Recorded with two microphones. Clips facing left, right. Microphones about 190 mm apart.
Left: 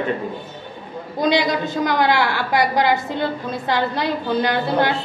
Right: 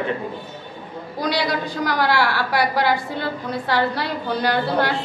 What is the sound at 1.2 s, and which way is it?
A woman's voice, 20° left (ahead or behind).